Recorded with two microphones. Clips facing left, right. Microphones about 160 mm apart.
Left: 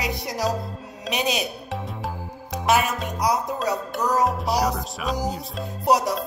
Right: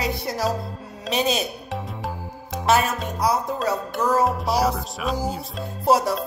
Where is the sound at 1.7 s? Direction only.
Centre (ahead or behind).